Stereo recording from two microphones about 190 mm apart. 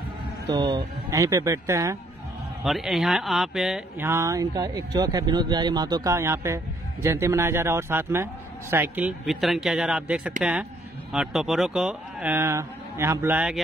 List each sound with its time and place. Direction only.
0.5 s speech: 25° right (ahead or behind)
2.6 s speech: centre (ahead or behind)
4.0 s a man's voice: 15° right (ahead or behind)